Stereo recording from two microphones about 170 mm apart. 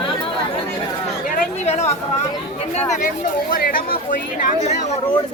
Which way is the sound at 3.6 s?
55° left (ahead or behind).